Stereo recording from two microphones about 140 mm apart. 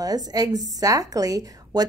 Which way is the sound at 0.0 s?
25° right (ahead or behind).